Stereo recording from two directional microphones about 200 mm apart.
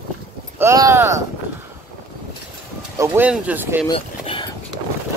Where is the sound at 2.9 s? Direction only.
10° right (ahead or behind).